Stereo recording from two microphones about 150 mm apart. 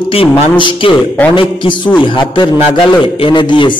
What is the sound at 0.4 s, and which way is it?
A man's voice, 35° left (ahead or behind).